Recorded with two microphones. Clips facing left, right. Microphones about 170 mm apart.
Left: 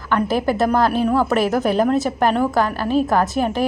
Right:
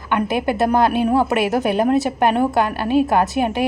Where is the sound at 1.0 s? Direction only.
25° right (ahead or behind).